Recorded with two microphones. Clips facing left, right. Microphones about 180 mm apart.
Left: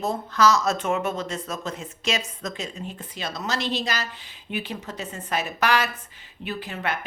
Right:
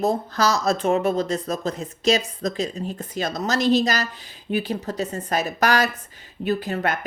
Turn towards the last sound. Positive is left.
turn(degrees=-40)  # may be behind; listen again after turning